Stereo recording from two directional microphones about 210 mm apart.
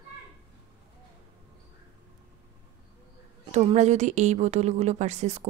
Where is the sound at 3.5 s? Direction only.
35° right (ahead or behind).